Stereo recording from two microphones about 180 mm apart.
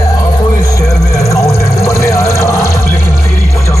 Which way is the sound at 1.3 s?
15° left (ahead or behind).